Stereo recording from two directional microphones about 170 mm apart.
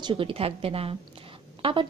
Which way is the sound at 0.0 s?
30° right (ahead or behind).